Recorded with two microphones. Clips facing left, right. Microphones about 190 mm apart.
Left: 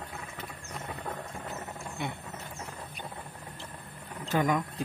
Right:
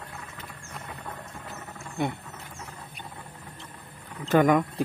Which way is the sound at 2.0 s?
50° right (ahead or behind).